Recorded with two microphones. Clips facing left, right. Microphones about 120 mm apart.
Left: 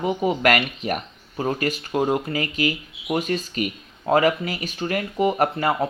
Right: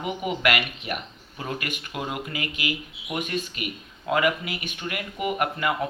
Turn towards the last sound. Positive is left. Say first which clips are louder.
# left 5 dB
turn(degrees=35)  # may be behind; listen again after turning